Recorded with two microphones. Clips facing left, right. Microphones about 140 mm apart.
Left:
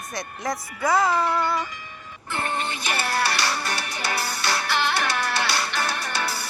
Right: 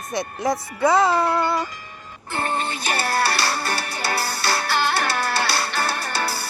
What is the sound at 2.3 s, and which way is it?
Music, 35° right (ahead or behind).